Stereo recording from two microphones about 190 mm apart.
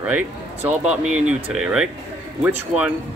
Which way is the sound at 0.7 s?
5° right (ahead or behind).